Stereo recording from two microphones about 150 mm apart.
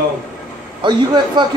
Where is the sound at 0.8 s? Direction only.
30° right (ahead or behind).